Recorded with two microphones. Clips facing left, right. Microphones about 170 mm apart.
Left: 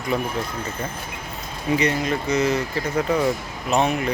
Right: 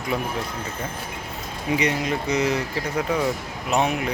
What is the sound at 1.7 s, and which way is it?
Speech, 15° right (ahead or behind).